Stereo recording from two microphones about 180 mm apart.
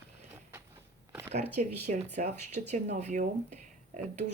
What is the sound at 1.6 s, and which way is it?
Speech, 45° right (ahead or behind).